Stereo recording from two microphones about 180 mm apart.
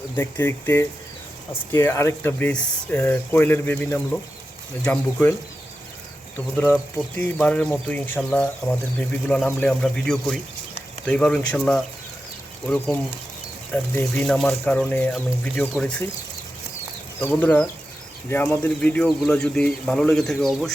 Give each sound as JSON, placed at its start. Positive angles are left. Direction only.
{"t": 0.2, "sound": "speech", "side_deg": 10}
{"t": 6.9, "sound": "speech", "side_deg": 10}
{"t": 17.2, "sound": "speech", "side_deg": 10}